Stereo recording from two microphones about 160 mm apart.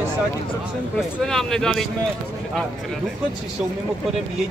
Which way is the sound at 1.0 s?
Centre (ahead or behind).